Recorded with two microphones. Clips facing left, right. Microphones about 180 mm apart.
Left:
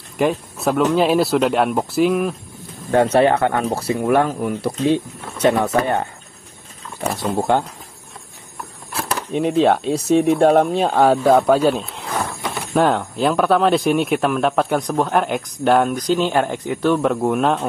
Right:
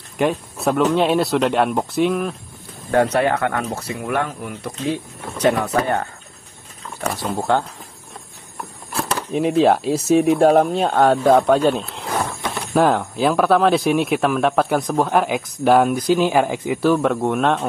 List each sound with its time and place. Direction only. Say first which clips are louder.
0.2 s speech: left 1 dB; centre (ahead or behind)
2.9 s speech: left 3 dB; 25° left (ahead or behind)
7.3 s speech: left 1 dB; 15° left (ahead or behind)
8.9 s speech: even; centre (ahead or behind)